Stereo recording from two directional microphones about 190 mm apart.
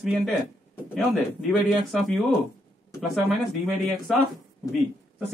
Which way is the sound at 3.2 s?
Centre (ahead or behind).